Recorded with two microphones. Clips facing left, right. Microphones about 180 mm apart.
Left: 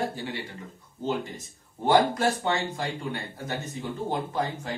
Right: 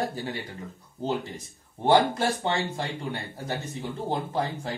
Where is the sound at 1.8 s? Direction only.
30° right (ahead or behind).